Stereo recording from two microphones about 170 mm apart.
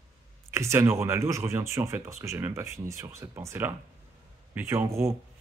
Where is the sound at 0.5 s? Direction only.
15° right (ahead or behind).